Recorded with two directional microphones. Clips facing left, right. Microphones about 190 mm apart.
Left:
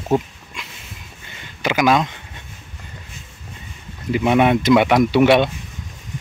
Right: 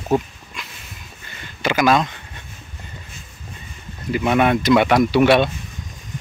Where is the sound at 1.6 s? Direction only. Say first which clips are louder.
Even; 15° left (ahead or behind).